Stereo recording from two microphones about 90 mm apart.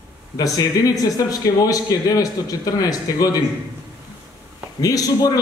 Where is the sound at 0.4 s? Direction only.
40° left (ahead or behind).